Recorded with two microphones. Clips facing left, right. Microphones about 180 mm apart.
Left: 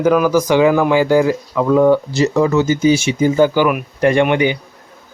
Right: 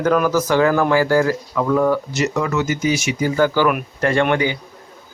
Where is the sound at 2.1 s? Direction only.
30° left (ahead or behind).